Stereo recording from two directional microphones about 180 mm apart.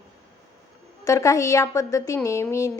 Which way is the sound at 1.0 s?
15° left (ahead or behind).